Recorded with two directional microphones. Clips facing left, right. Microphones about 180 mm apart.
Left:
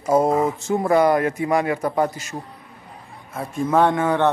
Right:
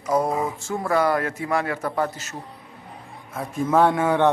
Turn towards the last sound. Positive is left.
turn(degrees=-10)  # may be behind; listen again after turning